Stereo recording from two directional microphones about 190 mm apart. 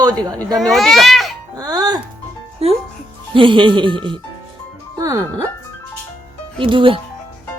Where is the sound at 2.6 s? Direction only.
30° right (ahead or behind).